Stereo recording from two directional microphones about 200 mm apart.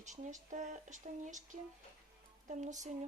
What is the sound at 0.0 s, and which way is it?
A woman's voice, 35° right (ahead or behind).